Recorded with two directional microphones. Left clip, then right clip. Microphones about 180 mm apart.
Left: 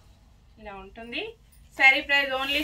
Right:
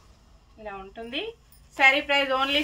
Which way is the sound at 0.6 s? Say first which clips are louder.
Right 4 dB; 10° right (ahead or behind).